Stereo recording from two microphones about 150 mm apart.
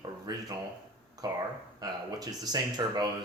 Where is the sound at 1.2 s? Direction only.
25° right (ahead or behind).